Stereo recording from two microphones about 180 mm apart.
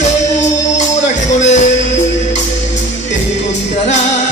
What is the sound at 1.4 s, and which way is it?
Music, 40° left (ahead or behind).